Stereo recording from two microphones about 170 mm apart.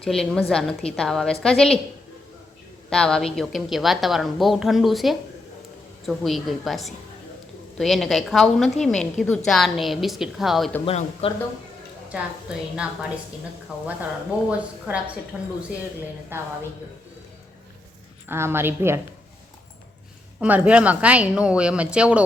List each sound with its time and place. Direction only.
0.0 s a woman's voice: 5° left (ahead or behind)
2.9 s a woman's voice: 5° left (ahead or behind)
10.8 s speech: 35° left (ahead or behind)
12.1 s a woman's voice: 5° right (ahead or behind)
18.3 s a woman's voice: 15° right (ahead or behind)
20.4 s a woman's voice: 10° right (ahead or behind)